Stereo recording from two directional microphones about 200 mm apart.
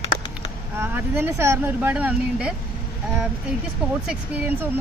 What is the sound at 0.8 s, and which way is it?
Speech, 10° right (ahead or behind).